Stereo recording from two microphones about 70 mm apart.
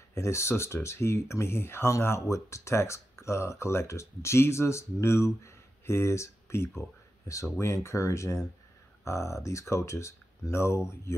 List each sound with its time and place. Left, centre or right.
0.1 s speech: left